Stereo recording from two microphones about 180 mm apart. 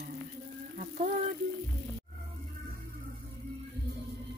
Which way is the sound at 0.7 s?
45° right (ahead or behind).